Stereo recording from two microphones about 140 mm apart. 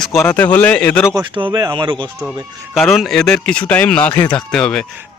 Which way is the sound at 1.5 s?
30° right (ahead or behind).